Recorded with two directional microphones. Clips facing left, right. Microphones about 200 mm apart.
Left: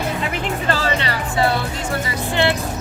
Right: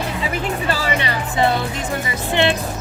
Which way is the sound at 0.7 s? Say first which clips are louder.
Left 2 dB; 15° right (ahead or behind).